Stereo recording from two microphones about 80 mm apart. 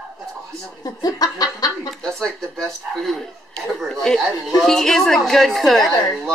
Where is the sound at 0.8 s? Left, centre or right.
Left.